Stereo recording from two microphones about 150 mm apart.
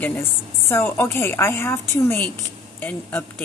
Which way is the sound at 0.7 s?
15° left (ahead or behind).